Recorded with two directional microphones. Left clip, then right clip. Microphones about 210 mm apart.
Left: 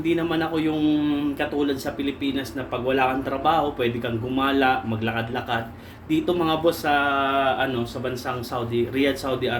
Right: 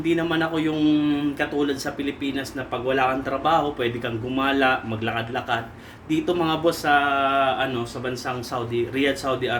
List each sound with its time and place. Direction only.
0.0 s speech: 15° right (ahead or behind)